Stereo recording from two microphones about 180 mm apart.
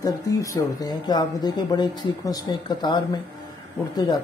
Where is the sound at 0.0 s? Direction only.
20° left (ahead or behind).